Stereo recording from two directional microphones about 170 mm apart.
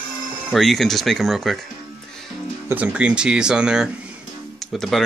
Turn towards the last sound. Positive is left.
turn(degrees=0)  # may be behind; listen again after turning